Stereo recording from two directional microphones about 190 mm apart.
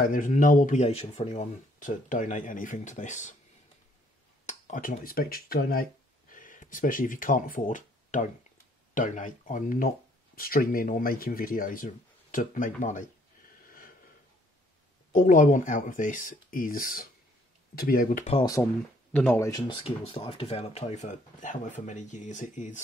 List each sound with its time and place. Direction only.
0.0 s speech: 45° left (ahead or behind)
4.5 s speech: 40° left (ahead or behind)
13.7 s snort: 50° left (ahead or behind)
15.1 s speech: 45° left (ahead or behind)
18.4 s speech: 15° left (ahead or behind); by 22.8 s 40° left (ahead or behind)